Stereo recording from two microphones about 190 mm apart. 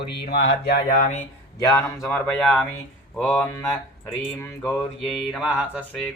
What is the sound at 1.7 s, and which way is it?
Speech, 5° left (ahead or behind).